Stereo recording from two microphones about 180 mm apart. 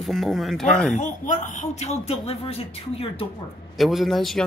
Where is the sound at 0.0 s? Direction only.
Centre (ahead or behind).